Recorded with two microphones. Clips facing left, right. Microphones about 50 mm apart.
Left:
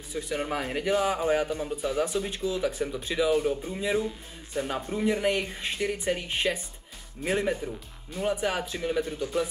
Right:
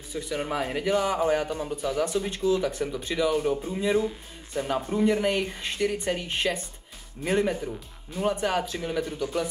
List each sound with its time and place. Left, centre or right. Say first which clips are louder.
0.1 s speech: right 1 dB; centre
2.1 s speech: right 4 dB; centre